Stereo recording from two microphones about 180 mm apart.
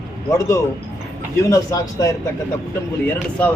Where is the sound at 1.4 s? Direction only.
15° left (ahead or behind).